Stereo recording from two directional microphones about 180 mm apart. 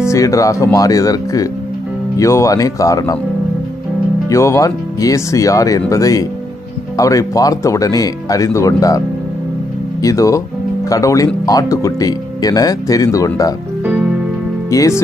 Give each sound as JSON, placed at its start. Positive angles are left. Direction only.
{"t": 0.0, "sound": "speech", "side_deg": 15}
{"t": 4.3, "sound": "speech", "side_deg": 15}
{"t": 10.0, "sound": "speech", "side_deg": 15}
{"t": 14.7, "sound": "speech", "side_deg": 20}